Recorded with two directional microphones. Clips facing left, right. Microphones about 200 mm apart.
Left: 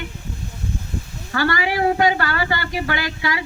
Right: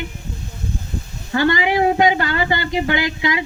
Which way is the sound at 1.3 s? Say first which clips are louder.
Right 4 dB; 20° right (ahead or behind).